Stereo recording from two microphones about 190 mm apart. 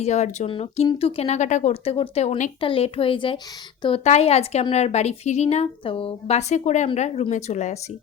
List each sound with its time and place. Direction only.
0.0 s a woman's voice: 35° left (ahead or behind)